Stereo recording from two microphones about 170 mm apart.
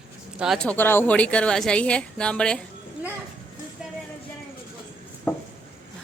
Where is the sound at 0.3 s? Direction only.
Centre (ahead or behind).